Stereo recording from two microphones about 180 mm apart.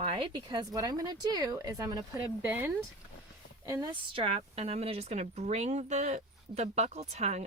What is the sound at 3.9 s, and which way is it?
A woman's voice, 30° right (ahead or behind).